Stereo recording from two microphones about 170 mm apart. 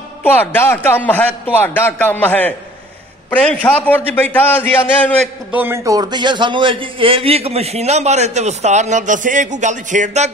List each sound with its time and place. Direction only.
0.2 s a man's voice: 10° left (ahead or behind)
3.6 s a man's voice: 10° left (ahead or behind)
5.5 s a man's voice: 10° right (ahead or behind); by 10.3 s 45° right (ahead or behind)